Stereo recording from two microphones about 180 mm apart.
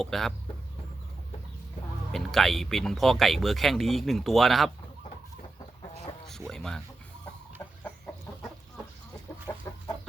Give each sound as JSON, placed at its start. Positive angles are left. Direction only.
{"t": 0.0, "sound": "speech", "side_deg": 0}
{"t": 2.1, "sound": "speech", "side_deg": 0}
{"t": 6.5, "sound": "speech", "side_deg": 5}
{"t": 9.5, "sound": "chicken", "side_deg": 15}